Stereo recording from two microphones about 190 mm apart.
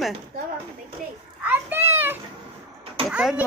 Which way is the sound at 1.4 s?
10° right (ahead or behind).